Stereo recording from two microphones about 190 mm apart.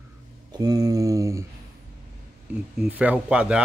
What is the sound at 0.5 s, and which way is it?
Speech, 20° right (ahead or behind).